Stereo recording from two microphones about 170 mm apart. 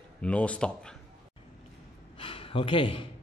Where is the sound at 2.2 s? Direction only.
30° left (ahead or behind).